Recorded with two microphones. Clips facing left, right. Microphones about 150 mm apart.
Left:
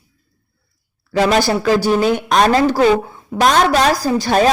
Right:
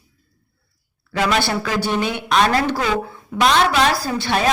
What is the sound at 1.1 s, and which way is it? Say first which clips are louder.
A woman's voice: left 5 dB; 35° left (ahead or behind).